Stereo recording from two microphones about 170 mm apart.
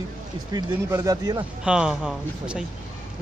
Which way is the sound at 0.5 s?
20° right (ahead or behind).